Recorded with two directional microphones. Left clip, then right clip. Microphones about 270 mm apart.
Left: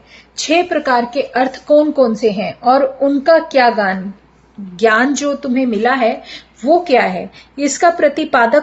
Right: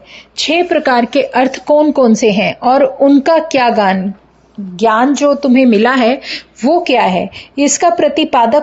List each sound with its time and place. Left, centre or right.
0.4 s a woman's voice: right
5.4 s speech: right; by 8.4 s centre